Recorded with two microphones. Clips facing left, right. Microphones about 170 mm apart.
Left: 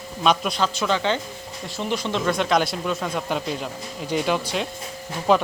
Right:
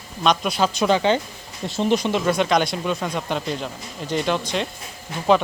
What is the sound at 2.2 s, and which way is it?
Speech, centre (ahead or behind).